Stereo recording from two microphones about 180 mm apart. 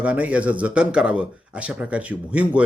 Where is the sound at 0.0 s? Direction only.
5° right (ahead or behind).